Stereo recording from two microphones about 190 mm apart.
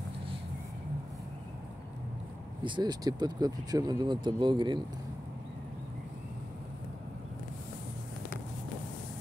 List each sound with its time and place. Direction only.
2.6 s speech: 25° right (ahead or behind)